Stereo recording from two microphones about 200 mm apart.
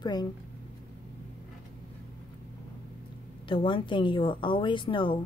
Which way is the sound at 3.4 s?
25° left (ahead or behind).